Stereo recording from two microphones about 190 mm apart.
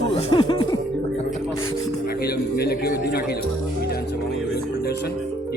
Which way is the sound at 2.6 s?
55° left (ahead or behind).